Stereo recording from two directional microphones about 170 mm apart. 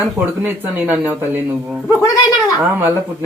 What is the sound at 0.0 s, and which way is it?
Speech, 10° right (ahead or behind).